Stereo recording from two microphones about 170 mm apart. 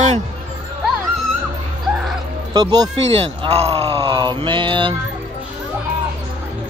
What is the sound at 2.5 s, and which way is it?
Speech, 25° right (ahead or behind).